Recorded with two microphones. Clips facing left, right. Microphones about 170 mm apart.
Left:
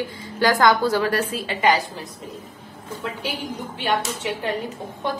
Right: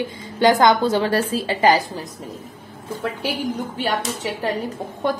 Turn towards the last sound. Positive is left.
turn(degrees=-50)  # may be behind; listen again after turning